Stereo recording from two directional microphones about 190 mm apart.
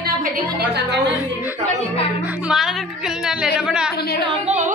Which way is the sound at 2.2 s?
5° right (ahead or behind).